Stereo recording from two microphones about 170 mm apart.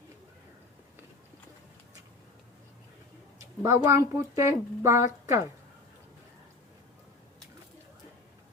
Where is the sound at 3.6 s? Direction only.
15° right (ahead or behind).